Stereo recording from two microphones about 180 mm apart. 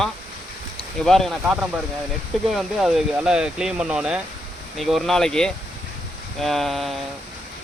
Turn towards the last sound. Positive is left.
turn(degrees=0)  # may be behind; listen again after turning